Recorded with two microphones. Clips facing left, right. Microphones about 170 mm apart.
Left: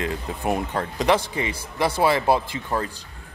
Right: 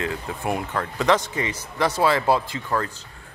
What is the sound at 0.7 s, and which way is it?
Speech, 35° left (ahead or behind).